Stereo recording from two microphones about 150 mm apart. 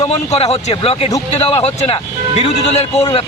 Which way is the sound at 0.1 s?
45° left (ahead or behind).